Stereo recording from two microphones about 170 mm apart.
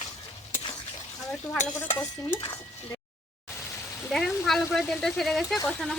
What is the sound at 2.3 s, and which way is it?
Speech, 25° left (ahead or behind).